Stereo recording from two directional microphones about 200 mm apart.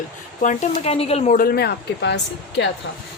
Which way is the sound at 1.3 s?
50° left (ahead or behind).